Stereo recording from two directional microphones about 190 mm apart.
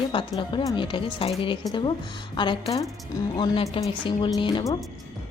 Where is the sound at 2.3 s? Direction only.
25° left (ahead or behind).